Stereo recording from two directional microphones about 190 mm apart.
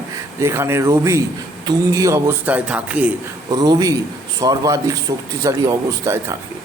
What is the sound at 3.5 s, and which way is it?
A man's voice, 20° right (ahead or behind).